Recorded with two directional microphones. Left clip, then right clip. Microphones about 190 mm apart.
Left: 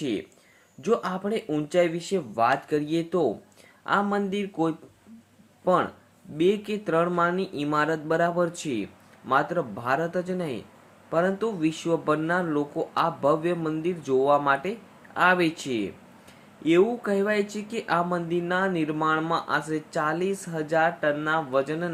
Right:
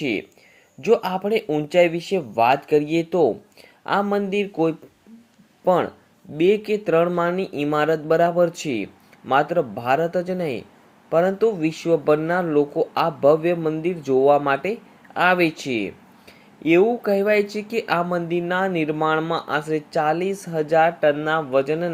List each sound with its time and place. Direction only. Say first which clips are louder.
0.9 s speech: right 7 dB; 15° right (ahead or behind)